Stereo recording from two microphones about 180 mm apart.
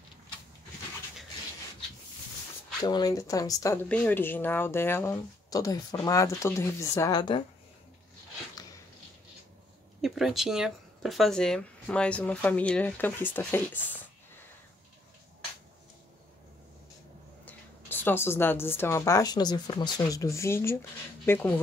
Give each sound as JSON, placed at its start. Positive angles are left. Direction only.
{"t": 2.8, "sound": "speech", "side_deg": 20}
{"t": 10.0, "sound": "speech", "side_deg": 0}
{"t": 17.5, "sound": "speech", "side_deg": 10}